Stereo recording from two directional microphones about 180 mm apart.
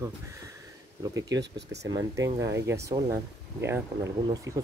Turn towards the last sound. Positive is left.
turn(degrees=-15)  # may be behind; listen again after turning